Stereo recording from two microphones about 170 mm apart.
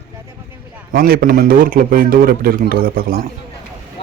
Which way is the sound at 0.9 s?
60° right (ahead or behind).